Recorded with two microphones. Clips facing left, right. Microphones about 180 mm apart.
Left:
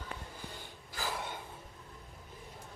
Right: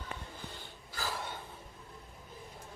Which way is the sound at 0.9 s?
15° left (ahead or behind).